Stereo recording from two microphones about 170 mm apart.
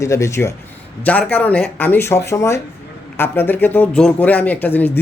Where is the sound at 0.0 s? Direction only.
15° left (ahead or behind).